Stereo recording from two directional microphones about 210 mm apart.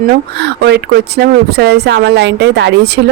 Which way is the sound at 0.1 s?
50° right (ahead or behind).